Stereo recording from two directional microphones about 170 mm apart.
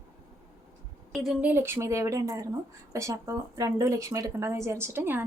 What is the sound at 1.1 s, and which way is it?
Speech, 5° right (ahead or behind).